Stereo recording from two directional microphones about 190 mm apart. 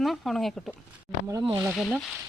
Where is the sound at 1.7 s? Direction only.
Centre (ahead or behind).